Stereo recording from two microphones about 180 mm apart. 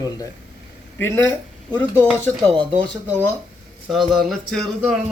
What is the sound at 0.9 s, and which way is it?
Speech, 15° left (ahead or behind).